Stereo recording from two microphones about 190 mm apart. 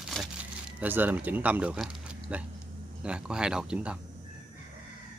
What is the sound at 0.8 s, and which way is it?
Speech, 10° right (ahead or behind).